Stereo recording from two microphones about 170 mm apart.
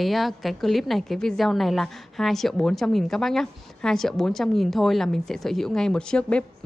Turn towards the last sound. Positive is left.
turn(degrees=5)  # may be behind; listen again after turning